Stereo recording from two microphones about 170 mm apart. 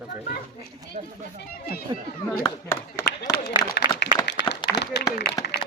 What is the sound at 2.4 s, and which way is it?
Speech, 15° left (ahead or behind).